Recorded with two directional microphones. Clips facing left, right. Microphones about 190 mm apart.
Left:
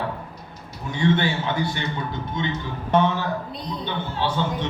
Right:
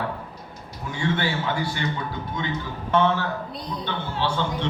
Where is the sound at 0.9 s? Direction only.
20° left (ahead or behind).